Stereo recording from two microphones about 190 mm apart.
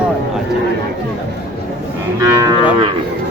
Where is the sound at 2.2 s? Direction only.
20° right (ahead or behind).